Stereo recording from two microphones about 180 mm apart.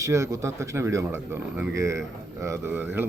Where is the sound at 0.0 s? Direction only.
15° right (ahead or behind).